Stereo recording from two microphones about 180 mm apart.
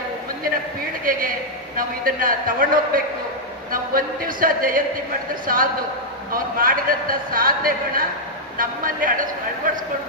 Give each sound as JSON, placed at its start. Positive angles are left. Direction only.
{"t": 1.1, "sound": "speech", "side_deg": -50}